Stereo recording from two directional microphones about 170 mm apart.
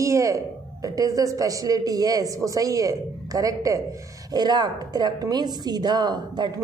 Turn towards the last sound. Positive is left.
turn(degrees=-25)  # may be behind; listen again after turning